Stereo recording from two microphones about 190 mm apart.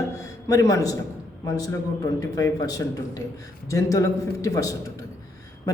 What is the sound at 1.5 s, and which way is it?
A man's voice, 15° left (ahead or behind).